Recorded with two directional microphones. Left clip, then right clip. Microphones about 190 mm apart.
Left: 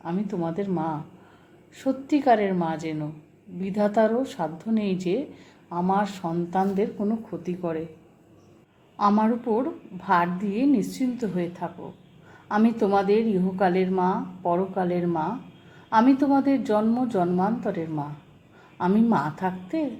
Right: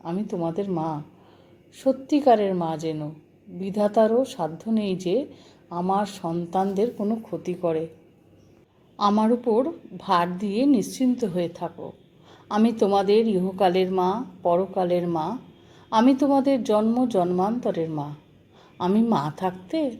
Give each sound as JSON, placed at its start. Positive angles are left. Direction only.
{"t": 0.0, "sound": "a woman's voice", "side_deg": -30}
{"t": 9.0, "sound": "a woman's voice", "side_deg": -30}